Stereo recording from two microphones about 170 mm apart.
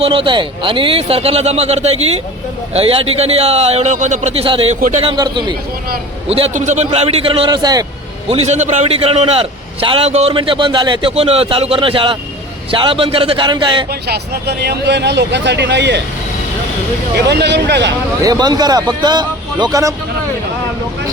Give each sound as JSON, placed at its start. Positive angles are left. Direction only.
{"t": 0.0, "sound": "a man's voice", "side_deg": -30}
{"t": 4.7, "sound": "a man's voice", "side_deg": -45}
{"t": 5.0, "sound": "a man's voice", "side_deg": -25}
{"t": 8.3, "sound": "a man's voice", "side_deg": -40}
{"t": 14.1, "sound": "speech", "side_deg": -70}
{"t": 17.2, "sound": "speech", "side_deg": -80}
{"t": 18.2, "sound": "speech", "side_deg": -25}